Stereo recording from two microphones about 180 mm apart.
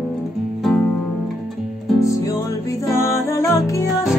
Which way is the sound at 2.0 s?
20° left (ahead or behind).